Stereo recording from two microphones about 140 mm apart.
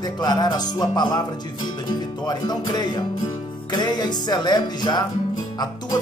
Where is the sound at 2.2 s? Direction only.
30° left (ahead or behind).